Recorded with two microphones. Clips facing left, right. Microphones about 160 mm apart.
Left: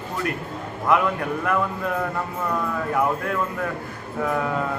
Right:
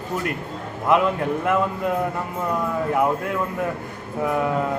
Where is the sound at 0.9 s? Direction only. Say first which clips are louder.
Right 2 dB; 20° right (ahead or behind).